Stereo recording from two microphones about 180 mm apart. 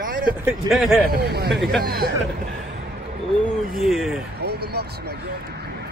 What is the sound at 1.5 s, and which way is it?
Speech, centre (ahead or behind).